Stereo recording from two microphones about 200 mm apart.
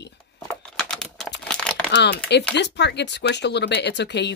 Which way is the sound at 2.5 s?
60° left (ahead or behind).